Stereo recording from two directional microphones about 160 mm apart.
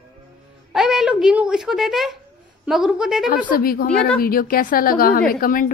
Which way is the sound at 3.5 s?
65° left (ahead or behind).